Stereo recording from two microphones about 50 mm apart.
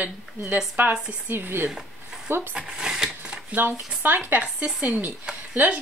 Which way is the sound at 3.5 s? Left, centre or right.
Right.